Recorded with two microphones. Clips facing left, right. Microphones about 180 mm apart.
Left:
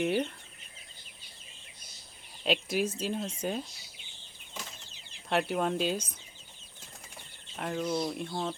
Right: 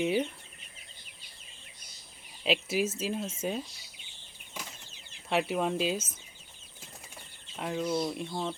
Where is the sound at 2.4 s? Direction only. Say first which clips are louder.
Right 1 dB; 5° right (ahead or behind).